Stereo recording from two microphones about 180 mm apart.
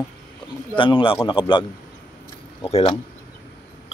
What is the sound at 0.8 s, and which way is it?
A man's voice, 25° left (ahead or behind).